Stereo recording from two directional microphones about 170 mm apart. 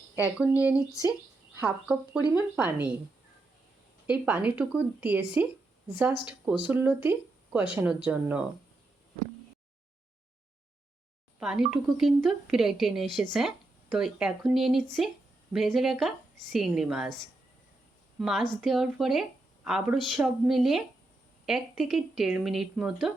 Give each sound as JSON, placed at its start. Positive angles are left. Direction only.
{"t": 0.3, "sound": "speech", "side_deg": -10}
{"t": 0.8, "sound": "speech", "side_deg": 20}
{"t": 1.5, "sound": "speech", "side_deg": -5}
{"t": 4.0, "sound": "speech", "side_deg": -10}
{"t": 11.3, "sound": "speech", "side_deg": -5}
{"t": 18.2, "sound": "a woman's voice", "side_deg": 0}